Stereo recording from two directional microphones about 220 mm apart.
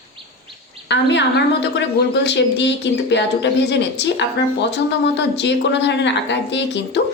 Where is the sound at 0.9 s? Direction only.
50° left (ahead or behind).